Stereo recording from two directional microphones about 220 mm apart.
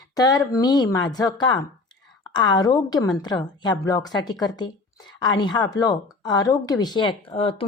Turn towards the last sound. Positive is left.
turn(degrees=25)  # may be behind; listen again after turning